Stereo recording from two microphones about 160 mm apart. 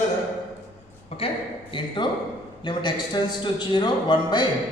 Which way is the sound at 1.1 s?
40° left (ahead or behind).